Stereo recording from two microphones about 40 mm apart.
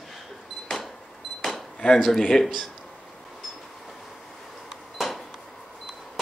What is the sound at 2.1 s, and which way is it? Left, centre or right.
Speech, centre.